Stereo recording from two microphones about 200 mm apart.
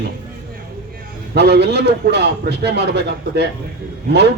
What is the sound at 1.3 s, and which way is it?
A man's voice, 55° right (ahead or behind).